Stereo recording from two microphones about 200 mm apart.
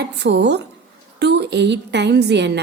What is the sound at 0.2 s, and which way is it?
A woman's voice, 60° right (ahead or behind).